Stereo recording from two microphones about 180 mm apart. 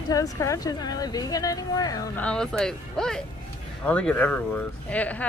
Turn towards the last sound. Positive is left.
turn(degrees=10)  # may be behind; listen again after turning